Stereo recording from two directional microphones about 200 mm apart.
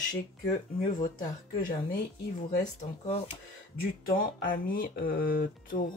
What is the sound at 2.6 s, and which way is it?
Speech, 35° left (ahead or behind).